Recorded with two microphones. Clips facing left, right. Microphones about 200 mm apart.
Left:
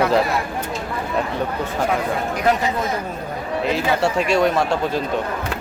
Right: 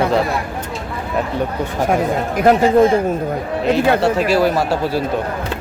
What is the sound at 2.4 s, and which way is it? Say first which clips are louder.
Speech: right 8 dB; 50° right (ahead or behind).